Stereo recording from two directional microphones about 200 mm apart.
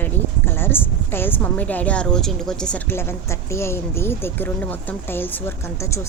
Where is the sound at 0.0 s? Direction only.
10° left (ahead or behind).